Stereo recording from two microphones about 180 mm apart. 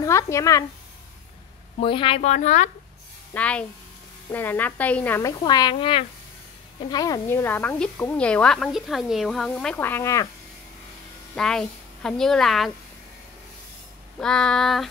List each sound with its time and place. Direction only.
0.0 s speech: 15° left (ahead or behind)
1.8 s speech: 30° left (ahead or behind)
3.3 s a woman's voice: 5° left (ahead or behind)
5.4 s a woman's voice: 25° left (ahead or behind)
11.3 s speech: 5° left (ahead or behind)
14.2 s child singing: 5° left (ahead or behind)